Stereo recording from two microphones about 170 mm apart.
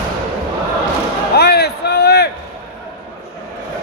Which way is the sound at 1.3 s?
75° left (ahead or behind).